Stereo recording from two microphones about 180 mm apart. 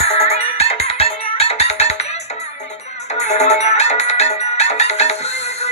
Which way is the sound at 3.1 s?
40° left (ahead or behind).